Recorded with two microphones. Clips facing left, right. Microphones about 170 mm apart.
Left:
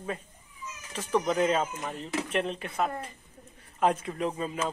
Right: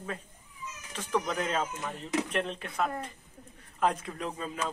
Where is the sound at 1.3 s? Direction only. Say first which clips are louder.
Left 5 dB; 10° left (ahead or behind).